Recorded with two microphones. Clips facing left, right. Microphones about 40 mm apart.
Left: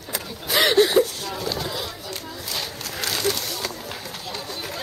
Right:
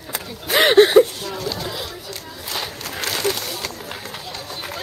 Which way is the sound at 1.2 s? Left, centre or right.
Centre.